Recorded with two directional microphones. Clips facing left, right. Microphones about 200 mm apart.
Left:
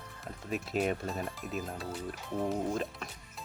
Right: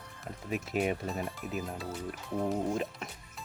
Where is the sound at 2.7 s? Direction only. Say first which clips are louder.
Right 1 dB; 15° right (ahead or behind).